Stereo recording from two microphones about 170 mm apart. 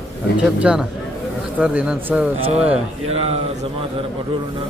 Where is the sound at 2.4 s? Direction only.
35° right (ahead or behind).